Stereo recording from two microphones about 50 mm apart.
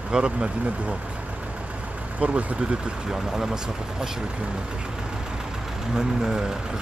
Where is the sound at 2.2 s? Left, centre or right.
Right.